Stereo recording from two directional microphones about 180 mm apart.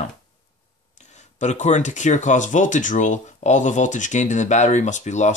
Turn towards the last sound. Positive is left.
turn(degrees=40)  # may be behind; listen again after turning